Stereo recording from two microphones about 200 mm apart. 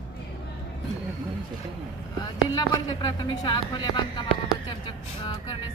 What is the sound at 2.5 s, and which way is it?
Speech, 20° left (ahead or behind).